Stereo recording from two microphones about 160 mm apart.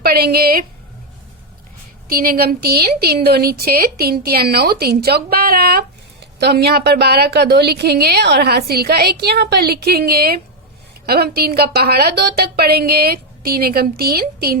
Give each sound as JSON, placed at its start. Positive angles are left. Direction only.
{"t": 0.0, "sound": "a woman's voice", "side_deg": -75}
{"t": 2.0, "sound": "a woman's voice", "side_deg": -65}
{"t": 6.4, "sound": "a woman's voice", "side_deg": -90}